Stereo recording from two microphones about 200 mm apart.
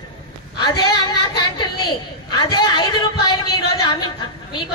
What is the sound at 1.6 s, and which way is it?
A man's voice, 20° left (ahead or behind).